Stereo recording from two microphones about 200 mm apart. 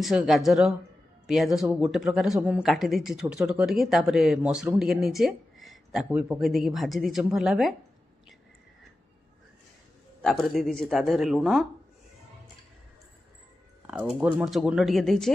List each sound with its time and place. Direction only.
0.0 s speech: centre (ahead or behind)
10.2 s speech: centre (ahead or behind)
13.8 s speech: 5° right (ahead or behind)